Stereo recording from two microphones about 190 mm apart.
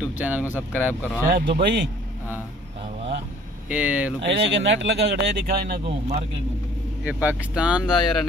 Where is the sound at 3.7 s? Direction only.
10° right (ahead or behind).